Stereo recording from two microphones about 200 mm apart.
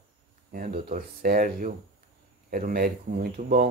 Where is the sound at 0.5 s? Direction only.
45° right (ahead or behind).